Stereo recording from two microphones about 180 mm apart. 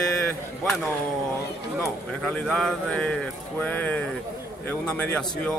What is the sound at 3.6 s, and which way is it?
Speech, 10° left (ahead or behind).